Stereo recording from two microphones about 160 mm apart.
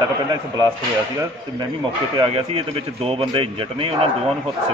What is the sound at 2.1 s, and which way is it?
A man's voice, 35° right (ahead or behind).